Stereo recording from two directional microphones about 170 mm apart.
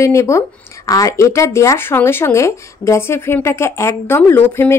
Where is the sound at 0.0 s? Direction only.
15° left (ahead or behind).